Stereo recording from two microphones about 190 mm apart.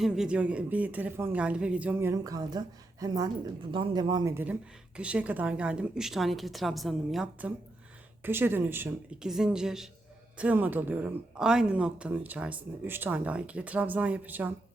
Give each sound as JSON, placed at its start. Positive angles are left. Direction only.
{"t": 0.0, "sound": "a woman's voice", "side_deg": -5}